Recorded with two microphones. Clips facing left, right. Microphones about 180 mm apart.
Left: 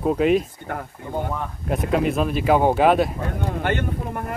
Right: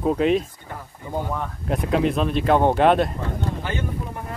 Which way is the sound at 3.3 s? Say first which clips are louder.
Left 7 dB; 60° left (ahead or behind).